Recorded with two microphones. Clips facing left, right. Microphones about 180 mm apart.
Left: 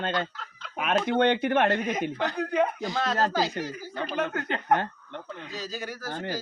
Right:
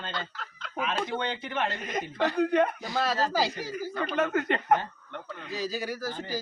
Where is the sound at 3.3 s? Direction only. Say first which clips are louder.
Left 1 dB; 10° right (ahead or behind).